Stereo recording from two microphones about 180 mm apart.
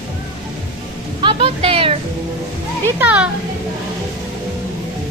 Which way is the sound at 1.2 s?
30° right (ahead or behind).